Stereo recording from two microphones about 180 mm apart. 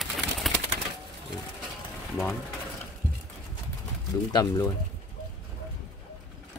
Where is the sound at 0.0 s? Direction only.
Centre (ahead or behind).